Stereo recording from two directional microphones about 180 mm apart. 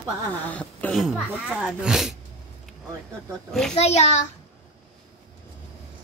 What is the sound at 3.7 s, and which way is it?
Speech, 35° left (ahead or behind).